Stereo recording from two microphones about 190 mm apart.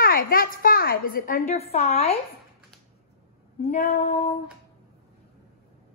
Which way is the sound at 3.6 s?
40° left (ahead or behind).